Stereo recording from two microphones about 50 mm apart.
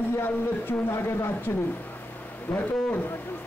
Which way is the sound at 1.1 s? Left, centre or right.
Left.